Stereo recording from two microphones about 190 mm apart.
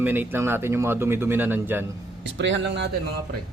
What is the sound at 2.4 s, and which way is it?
Speech, 70° right (ahead or behind).